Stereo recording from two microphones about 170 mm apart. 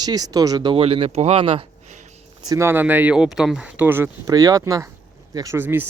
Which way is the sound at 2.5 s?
15° right (ahead or behind).